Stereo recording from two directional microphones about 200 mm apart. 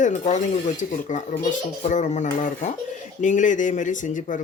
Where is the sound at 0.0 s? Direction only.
35° left (ahead or behind).